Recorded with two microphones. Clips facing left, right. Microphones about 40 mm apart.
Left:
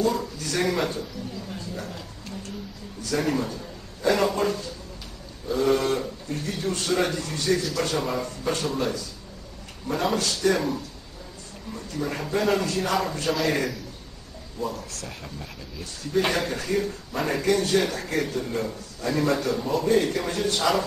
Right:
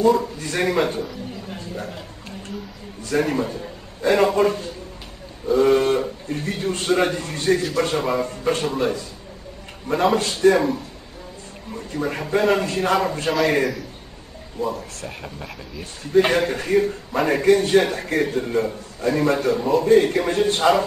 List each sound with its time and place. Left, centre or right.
0.0 s a man's voice: right
14.6 s a man's voice: right